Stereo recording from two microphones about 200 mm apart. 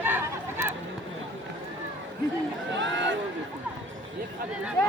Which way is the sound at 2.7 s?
65° right (ahead or behind).